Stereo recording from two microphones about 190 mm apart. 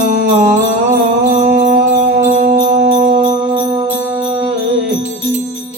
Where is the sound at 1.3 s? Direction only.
40° right (ahead or behind).